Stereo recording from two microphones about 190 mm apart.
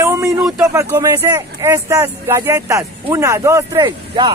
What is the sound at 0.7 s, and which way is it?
Speech, 15° right (ahead or behind).